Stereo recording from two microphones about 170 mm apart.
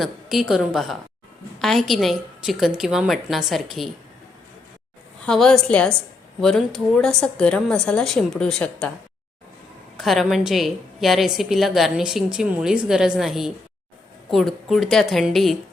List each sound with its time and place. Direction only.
0.0 s a woman's voice: centre (ahead or behind)
5.2 s a woman's voice: 5° left (ahead or behind)
10.0 s a woman's voice: centre (ahead or behind)